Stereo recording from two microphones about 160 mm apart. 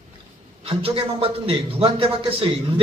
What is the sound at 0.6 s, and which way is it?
A man's voice, 35° right (ahead or behind).